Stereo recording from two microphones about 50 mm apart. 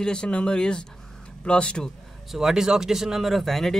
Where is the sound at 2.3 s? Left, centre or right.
Centre.